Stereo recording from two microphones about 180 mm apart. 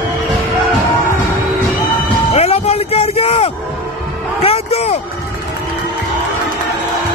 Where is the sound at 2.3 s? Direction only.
35° left (ahead or behind).